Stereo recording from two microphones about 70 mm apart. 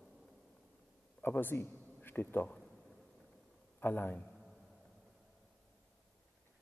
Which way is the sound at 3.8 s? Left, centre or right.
Left.